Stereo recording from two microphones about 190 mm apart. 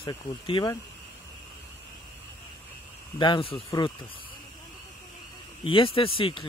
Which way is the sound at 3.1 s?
25° left (ahead or behind).